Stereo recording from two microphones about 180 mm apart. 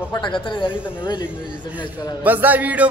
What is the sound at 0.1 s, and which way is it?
A man's voice, 25° left (ahead or behind).